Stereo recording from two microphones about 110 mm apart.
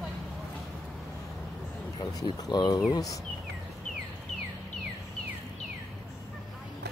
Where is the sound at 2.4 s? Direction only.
40° left (ahead or behind).